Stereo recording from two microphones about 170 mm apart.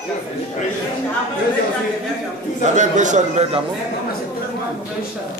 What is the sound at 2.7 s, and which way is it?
Speech, 45° right (ahead or behind).